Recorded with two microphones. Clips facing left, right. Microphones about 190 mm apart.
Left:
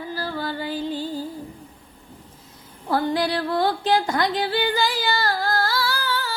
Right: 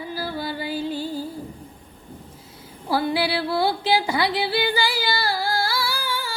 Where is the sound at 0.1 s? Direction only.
10° right (ahead or behind).